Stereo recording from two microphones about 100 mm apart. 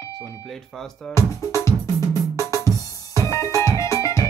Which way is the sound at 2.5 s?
30° left (ahead or behind).